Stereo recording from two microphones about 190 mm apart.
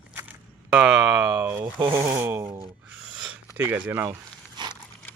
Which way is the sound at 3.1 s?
5° right (ahead or behind).